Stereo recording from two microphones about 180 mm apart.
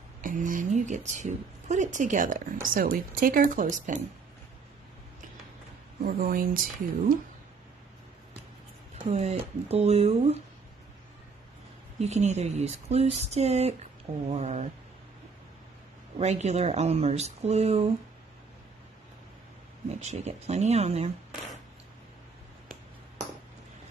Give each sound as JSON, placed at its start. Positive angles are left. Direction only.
{"t": 0.2, "sound": "a woman's voice", "side_deg": -45}
{"t": 6.0, "sound": "a woman's voice", "side_deg": -55}
{"t": 9.0, "sound": "speech", "side_deg": -40}
{"t": 12.0, "sound": "speech", "side_deg": -40}
{"t": 16.2, "sound": "speech", "side_deg": -40}
{"t": 19.9, "sound": "speech", "side_deg": -40}